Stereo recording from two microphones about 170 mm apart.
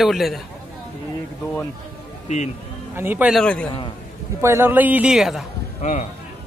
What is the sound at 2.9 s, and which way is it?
Speech, 10° right (ahead or behind).